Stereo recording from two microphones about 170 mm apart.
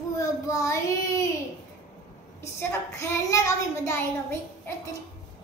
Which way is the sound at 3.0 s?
15° left (ahead or behind).